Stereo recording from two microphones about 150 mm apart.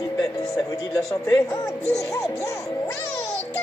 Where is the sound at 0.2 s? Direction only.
5° left (ahead or behind).